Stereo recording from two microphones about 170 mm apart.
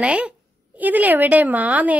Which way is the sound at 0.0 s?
5° right (ahead or behind).